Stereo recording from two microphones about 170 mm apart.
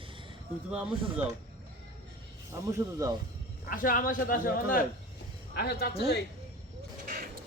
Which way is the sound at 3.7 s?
55° left (ahead or behind).